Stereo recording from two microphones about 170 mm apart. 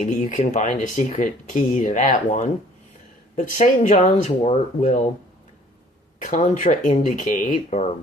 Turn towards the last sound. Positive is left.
turn(degrees=45)  # may be behind; listen again after turning